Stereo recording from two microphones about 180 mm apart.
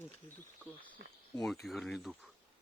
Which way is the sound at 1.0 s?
65° right (ahead or behind).